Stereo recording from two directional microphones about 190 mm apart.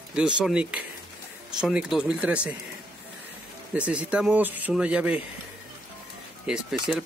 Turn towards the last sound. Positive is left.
turn(degrees=-5)  # may be behind; listen again after turning